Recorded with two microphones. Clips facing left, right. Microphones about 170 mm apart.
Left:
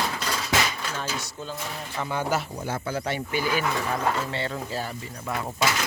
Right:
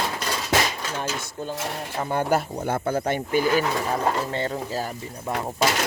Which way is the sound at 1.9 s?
35° right (ahead or behind).